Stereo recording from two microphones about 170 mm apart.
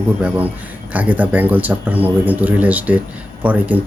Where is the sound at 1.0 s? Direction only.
10° right (ahead or behind).